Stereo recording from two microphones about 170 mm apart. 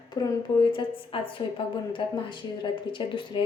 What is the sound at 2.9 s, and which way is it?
Speech, 30° left (ahead or behind).